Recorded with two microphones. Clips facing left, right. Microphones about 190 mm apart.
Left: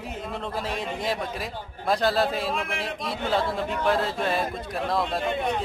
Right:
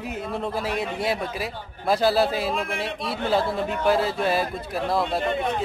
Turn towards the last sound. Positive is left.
turn(degrees=0)  # may be behind; listen again after turning